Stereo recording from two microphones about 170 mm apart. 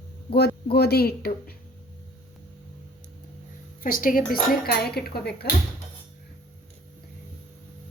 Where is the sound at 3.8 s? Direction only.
55° left (ahead or behind).